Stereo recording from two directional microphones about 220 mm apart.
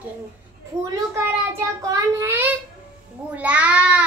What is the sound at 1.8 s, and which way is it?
A child's voice, 15° right (ahead or behind).